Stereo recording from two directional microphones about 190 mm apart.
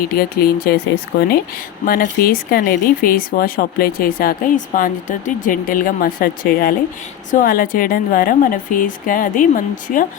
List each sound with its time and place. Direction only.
0.2 s speech: 55° left (ahead or behind)